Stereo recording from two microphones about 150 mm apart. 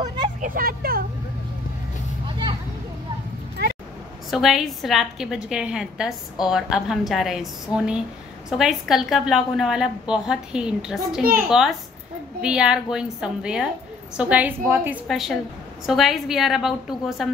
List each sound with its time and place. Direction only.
0.4 s speech: 75° right (ahead or behind)
2.2 s a sound: 30° right (ahead or behind)
4.3 s a woman's voice: centre (ahead or behind)
15.0 s a woman's voice: centre (ahead or behind)